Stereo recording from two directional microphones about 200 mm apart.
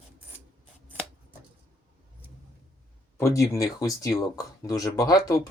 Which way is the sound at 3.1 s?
15° left (ahead or behind).